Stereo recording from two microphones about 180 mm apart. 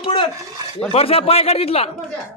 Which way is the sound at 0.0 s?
30° left (ahead or behind).